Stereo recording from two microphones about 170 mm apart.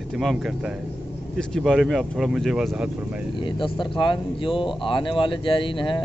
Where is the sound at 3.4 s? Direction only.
30° left (ahead or behind).